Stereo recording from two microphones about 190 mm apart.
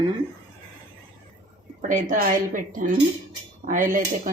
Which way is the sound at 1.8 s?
45° right (ahead or behind).